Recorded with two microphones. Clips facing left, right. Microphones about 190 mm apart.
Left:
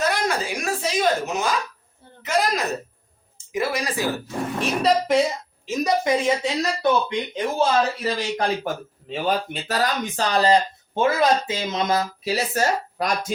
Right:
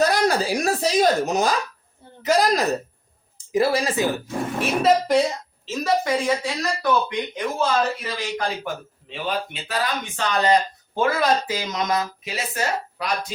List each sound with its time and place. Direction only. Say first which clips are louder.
0.0 s speech: right 4 dB; 35° right (ahead or behind)
4.6 s a woman's voice: right 2 dB; centre (ahead or behind)
5.6 s speech: left 1 dB; 15° left (ahead or behind)
8.0 s speech: left 3 dB; 35° left (ahead or behind)